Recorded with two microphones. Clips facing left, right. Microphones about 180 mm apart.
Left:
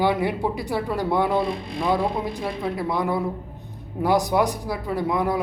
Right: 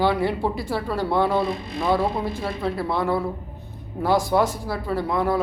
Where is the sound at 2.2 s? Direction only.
15° left (ahead or behind).